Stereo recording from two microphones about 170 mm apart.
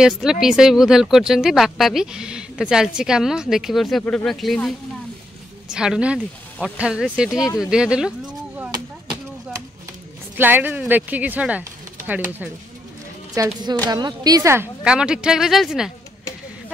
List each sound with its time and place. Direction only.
0.0 s speech: 5° right (ahead or behind)
10.3 s speech: 10° right (ahead or behind)
13.3 s speech: 25° right (ahead or behind)
14.8 s speech: 5° right (ahead or behind)